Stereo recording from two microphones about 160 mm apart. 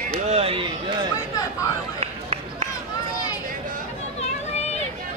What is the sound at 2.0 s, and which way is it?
Run, 40° right (ahead or behind).